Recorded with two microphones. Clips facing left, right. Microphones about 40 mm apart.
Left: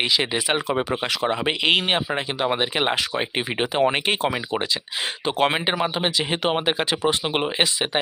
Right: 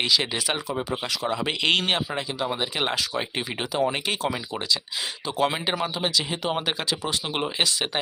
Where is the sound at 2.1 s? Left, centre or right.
Left.